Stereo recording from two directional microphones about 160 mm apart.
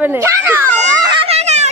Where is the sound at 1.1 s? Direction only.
35° right (ahead or behind).